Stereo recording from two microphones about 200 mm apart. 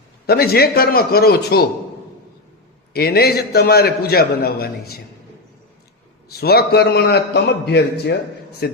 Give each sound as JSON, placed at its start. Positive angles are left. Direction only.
{"t": 0.3, "sound": "a man's voice", "side_deg": 50}
{"t": 2.9, "sound": "a man's voice", "side_deg": 50}
{"t": 6.3, "sound": "a man's voice", "side_deg": 50}